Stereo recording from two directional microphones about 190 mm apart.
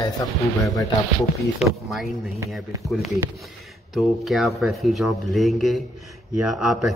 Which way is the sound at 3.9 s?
Centre (ahead or behind).